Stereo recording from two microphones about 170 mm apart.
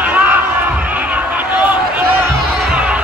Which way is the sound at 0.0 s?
10° right (ahead or behind).